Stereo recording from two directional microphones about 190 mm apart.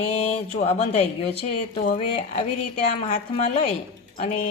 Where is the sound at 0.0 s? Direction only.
35° left (ahead or behind).